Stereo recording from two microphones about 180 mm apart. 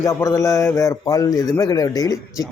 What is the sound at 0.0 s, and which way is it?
A man's voice, 15° left (ahead or behind).